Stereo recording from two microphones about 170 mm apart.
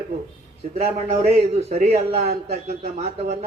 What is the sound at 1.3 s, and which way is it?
A man's voice, 35° right (ahead or behind).